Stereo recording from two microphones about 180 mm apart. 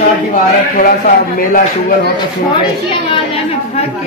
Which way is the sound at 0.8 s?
55° left (ahead or behind).